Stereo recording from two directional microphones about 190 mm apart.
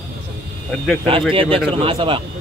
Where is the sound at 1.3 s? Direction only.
30° right (ahead or behind).